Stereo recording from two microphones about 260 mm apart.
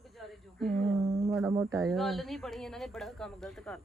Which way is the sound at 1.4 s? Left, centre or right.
Centre.